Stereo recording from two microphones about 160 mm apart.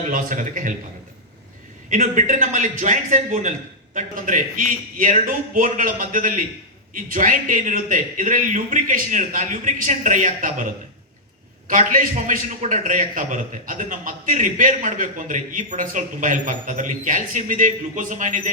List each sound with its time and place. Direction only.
0.1 s a man's voice: 55° right (ahead or behind)
1.9 s a man's voice: 50° right (ahead or behind)
11.7 s a man's voice: 55° right (ahead or behind)